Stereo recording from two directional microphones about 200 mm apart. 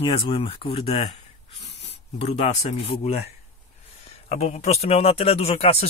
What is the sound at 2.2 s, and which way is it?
Speech, 30° left (ahead or behind).